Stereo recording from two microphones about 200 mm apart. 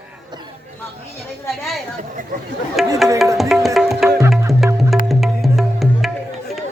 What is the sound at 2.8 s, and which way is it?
Speech, centre (ahead or behind).